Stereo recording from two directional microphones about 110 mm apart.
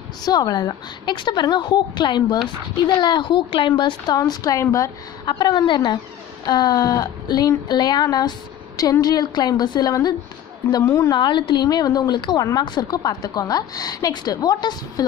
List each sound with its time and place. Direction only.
0.2 s a woman's voice: 35° left (ahead or behind)
5.2 s a woman's voice: 40° left (ahead or behind)
10.8 s a woman's voice: 25° left (ahead or behind)
11.1 s a woman's voice: 40° left (ahead or behind)